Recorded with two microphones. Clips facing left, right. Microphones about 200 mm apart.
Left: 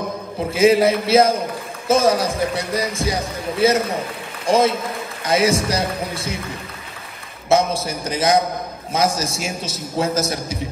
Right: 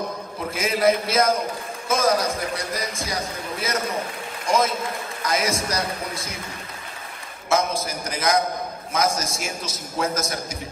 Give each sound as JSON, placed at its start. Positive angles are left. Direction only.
{"t": 0.5, "sound": "a man's voice", "side_deg": 30}
{"t": 7.4, "sound": "speech", "side_deg": 30}